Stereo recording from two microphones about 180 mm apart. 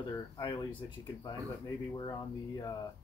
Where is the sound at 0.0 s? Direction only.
25° left (ahead or behind).